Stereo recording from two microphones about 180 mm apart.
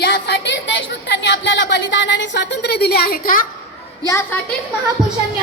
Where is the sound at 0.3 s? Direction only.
75° left (ahead or behind); by 3.4 s 55° left (ahead or behind).